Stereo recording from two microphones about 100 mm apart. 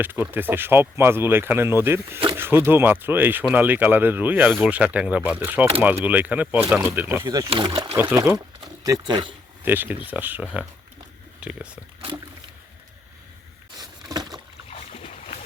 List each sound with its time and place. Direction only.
0.0 s speech: 20° right (ahead or behind)
7.4 s speech: 60° right (ahead or behind)
8.1 s speech: 20° right (ahead or behind)
8.6 s speech: 40° right (ahead or behind)
9.6 s speech: 20° right (ahead or behind)
13.7 s a sound: 40° right (ahead or behind)